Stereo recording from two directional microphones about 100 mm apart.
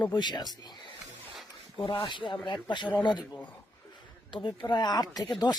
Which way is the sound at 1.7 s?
60° left (ahead or behind).